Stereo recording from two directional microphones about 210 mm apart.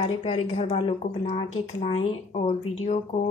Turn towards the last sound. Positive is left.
turn(degrees=30)  # may be behind; listen again after turning